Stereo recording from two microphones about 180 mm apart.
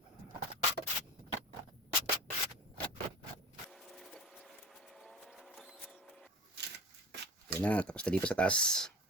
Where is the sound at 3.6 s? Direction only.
Centre (ahead or behind).